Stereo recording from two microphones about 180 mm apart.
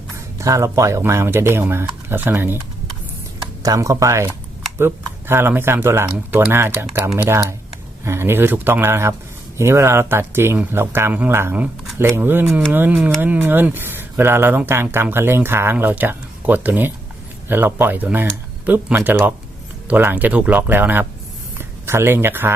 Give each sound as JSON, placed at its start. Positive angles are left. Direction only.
{"t": 0.3, "sound": "speech", "side_deg": -15}
{"t": 12.5, "sound": "speech", "side_deg": 0}